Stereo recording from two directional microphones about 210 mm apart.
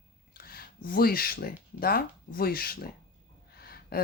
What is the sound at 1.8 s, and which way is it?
Speech, 45° left (ahead or behind).